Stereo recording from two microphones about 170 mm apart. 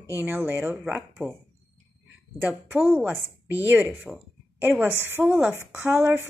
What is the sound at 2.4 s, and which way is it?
A woman's voice, 10° right (ahead or behind).